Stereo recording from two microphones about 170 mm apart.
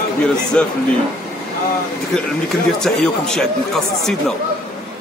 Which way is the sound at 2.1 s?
5° left (ahead or behind).